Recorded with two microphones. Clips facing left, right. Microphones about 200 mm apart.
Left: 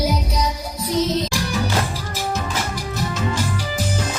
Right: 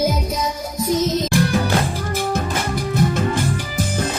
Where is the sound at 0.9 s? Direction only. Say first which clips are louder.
Right 2 dB; 45° right (ahead or behind).